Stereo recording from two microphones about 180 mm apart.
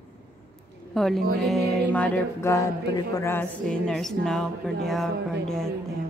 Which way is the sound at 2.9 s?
20° left (ahead or behind).